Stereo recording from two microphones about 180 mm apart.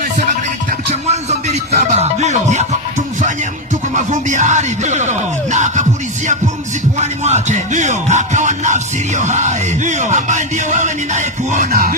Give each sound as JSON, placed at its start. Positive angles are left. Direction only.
{"t": 1.0, "sound": "speech", "side_deg": -40}
{"t": 3.9, "sound": "speech", "side_deg": -40}
{"t": 7.0, "sound": "music", "side_deg": -40}